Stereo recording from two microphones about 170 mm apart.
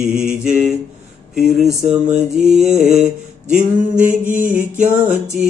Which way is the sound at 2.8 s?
40° right (ahead or behind).